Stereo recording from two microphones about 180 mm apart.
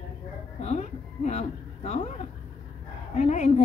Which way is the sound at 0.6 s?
40° left (ahead or behind).